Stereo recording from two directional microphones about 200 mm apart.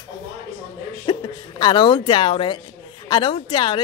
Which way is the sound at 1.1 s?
20° left (ahead or behind).